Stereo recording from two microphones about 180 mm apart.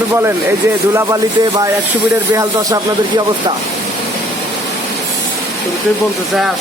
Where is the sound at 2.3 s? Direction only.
20° right (ahead or behind).